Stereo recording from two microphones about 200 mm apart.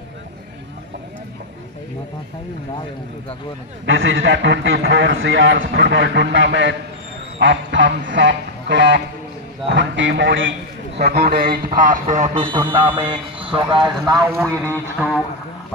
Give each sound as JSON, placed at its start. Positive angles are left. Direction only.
{"t": 3.8, "sound": "a man's voice", "side_deg": -65}
{"t": 7.3, "sound": "quack", "side_deg": -65}
{"t": 9.7, "sound": "a man's voice", "side_deg": -65}
{"t": 11.0, "sound": "a man's voice", "side_deg": -50}
{"t": 13.1, "sound": "speech", "side_deg": -25}
{"t": 15.0, "sound": "speech", "side_deg": 0}